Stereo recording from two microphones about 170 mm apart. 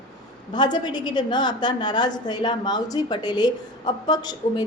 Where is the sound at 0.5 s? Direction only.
25° left (ahead or behind).